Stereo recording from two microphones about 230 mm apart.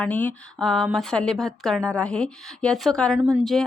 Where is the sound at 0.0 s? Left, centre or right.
Centre.